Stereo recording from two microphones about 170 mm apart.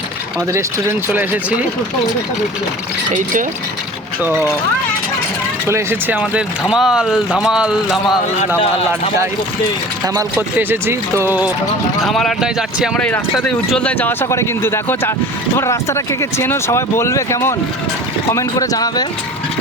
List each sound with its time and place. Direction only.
0.5 s speech: 15° right (ahead or behind)
5.6 s speech: 15° right (ahead or behind)
10.2 s speech: 15° right (ahead or behind)
12.0 s speech: centre (ahead or behind); by 19.0 s 20° left (ahead or behind)